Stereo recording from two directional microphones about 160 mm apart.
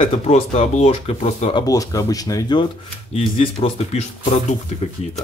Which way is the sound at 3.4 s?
40° left (ahead or behind).